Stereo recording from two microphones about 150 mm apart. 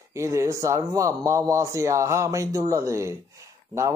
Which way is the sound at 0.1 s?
20° right (ahead or behind).